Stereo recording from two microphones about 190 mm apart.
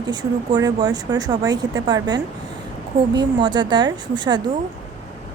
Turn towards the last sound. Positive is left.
turn(degrees=-25)  # may be behind; listen again after turning